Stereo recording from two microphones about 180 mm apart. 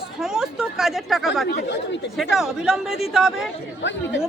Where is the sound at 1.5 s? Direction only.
70° left (ahead or behind).